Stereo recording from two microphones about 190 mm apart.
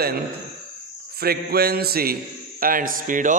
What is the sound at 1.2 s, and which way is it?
A man's voice, 55° right (ahead or behind).